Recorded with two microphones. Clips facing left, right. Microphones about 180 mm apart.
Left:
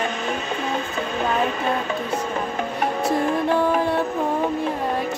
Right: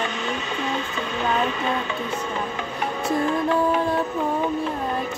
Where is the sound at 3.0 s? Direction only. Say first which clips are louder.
Even; 30° left (ahead or behind).